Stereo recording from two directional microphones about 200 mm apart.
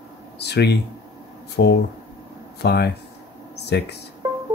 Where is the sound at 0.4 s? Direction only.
55° left (ahead or behind).